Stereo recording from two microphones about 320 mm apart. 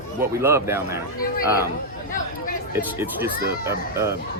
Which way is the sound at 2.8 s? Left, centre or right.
Centre.